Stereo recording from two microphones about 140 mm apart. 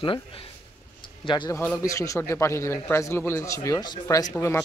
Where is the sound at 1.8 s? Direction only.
25° left (ahead or behind).